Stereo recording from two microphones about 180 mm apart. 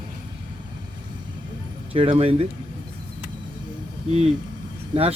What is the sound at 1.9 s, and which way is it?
Speech, 30° right (ahead or behind).